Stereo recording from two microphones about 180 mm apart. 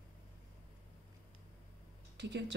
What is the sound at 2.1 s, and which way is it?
Speech, 75° right (ahead or behind).